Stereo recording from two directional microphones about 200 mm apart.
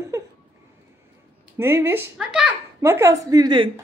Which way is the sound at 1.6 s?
10° right (ahead or behind).